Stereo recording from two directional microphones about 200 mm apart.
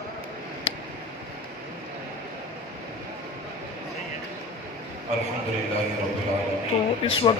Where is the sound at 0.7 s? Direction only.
25° left (ahead or behind).